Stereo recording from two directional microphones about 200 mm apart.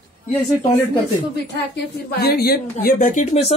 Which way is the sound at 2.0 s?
50° left (ahead or behind).